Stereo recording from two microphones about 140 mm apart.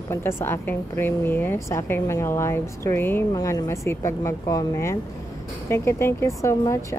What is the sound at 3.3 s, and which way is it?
A woman's voice, 25° left (ahead or behind).